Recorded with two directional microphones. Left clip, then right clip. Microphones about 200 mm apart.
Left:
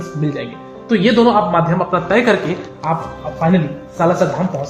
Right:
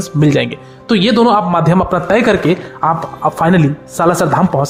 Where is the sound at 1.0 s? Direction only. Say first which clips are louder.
Right 1 dB; 15° right (ahead or behind).